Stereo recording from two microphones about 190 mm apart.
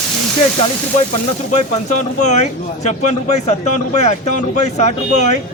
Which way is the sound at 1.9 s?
40° left (ahead or behind).